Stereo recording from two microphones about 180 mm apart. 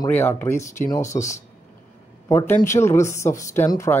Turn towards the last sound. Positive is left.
turn(degrees=15)  # may be behind; listen again after turning